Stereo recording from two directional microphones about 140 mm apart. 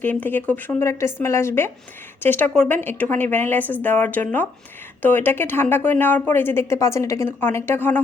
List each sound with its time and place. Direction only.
0.0 s speech: 15° left (ahead or behind)